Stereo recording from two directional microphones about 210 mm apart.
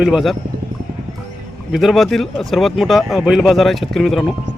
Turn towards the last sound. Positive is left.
turn(degrees=0)  # may be behind; listen again after turning